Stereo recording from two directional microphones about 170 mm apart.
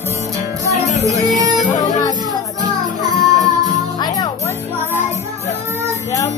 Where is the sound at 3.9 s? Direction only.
25° left (ahead or behind).